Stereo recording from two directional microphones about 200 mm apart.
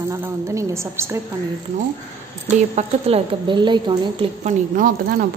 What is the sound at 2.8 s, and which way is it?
A woman's voice, 30° right (ahead or behind).